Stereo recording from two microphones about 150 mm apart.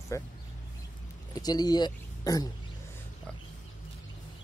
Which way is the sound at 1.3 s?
25° left (ahead or behind).